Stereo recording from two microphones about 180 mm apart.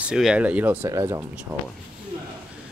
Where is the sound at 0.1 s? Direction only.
5° right (ahead or behind).